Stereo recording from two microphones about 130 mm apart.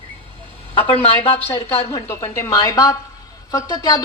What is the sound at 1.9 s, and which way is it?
Speech, 20° left (ahead or behind).